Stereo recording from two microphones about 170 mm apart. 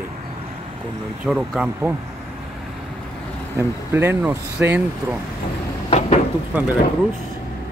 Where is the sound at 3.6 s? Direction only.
15° right (ahead or behind).